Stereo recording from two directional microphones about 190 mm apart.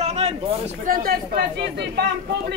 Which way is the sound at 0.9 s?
50° right (ahead or behind).